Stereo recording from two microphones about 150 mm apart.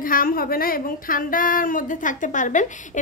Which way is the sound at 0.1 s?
70° left (ahead or behind).